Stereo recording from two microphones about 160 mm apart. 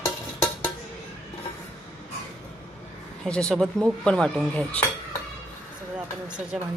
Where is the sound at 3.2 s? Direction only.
5° left (ahead or behind).